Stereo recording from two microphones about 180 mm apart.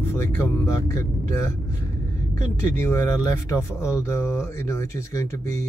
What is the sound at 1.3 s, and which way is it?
Speech, 15° left (ahead or behind).